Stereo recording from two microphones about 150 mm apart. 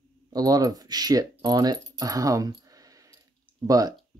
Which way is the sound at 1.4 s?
25° right (ahead or behind).